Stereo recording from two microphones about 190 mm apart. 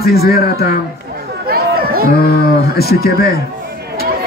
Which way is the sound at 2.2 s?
55° left (ahead or behind).